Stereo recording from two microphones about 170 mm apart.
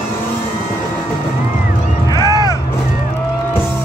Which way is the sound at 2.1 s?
25° left (ahead or behind).